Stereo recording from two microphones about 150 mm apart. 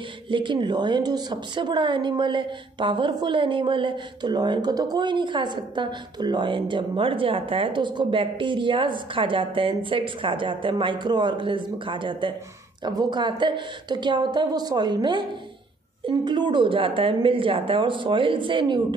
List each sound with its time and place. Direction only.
0.3 s a woman's voice: 30° right (ahead or behind)